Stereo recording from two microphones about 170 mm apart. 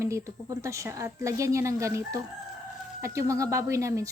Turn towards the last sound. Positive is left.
turn(degrees=-20)  # may be behind; listen again after turning